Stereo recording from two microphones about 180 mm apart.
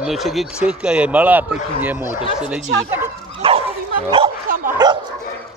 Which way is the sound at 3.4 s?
30° right (ahead or behind).